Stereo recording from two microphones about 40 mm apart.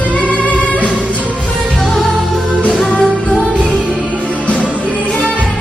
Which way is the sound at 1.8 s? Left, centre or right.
Centre.